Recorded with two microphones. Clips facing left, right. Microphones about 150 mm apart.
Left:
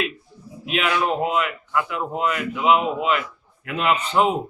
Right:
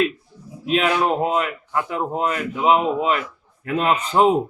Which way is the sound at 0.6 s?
40° right (ahead or behind).